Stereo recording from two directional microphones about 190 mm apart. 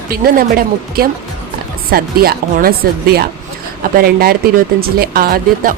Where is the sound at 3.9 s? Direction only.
50° right (ahead or behind).